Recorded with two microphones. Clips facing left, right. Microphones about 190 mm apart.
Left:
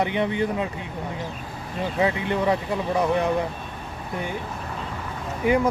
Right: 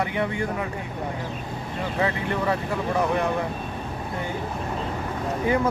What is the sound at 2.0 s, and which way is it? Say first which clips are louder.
Speech: left 3 dB; 20° left (ahead or behind).